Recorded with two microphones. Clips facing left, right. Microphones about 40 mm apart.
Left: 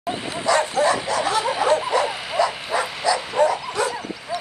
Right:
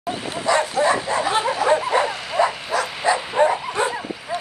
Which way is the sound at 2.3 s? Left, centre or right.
Centre.